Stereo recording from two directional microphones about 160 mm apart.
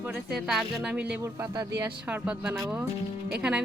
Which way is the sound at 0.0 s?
5° right (ahead or behind).